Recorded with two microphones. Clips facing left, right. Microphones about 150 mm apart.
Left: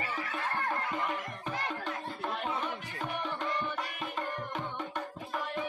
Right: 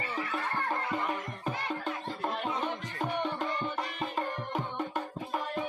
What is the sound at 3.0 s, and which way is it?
Music, 35° right (ahead or behind).